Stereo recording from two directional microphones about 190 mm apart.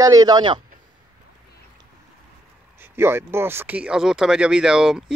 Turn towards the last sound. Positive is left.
turn(degrees=-5)  # may be behind; listen again after turning